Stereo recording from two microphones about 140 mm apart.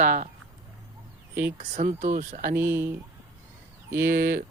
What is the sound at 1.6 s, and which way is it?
Speech, 50° right (ahead or behind).